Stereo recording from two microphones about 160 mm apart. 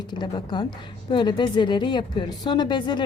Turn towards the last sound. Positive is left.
turn(degrees=30)  # may be behind; listen again after turning